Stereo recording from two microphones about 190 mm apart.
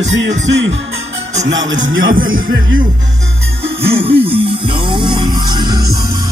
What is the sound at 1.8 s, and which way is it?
Speech, 90° right.